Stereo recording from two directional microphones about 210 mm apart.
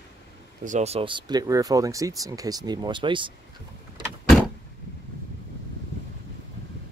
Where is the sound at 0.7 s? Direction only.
30° right (ahead or behind).